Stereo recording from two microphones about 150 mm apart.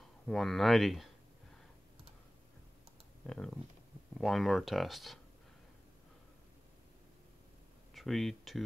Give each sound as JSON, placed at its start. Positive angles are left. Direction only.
{"t": 0.3, "sound": "speech", "side_deg": 0}
{"t": 3.3, "sound": "speech", "side_deg": 5}
{"t": 7.9, "sound": "speech", "side_deg": 0}